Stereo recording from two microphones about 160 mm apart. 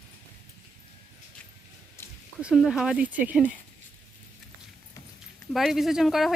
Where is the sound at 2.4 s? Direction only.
5° right (ahead or behind).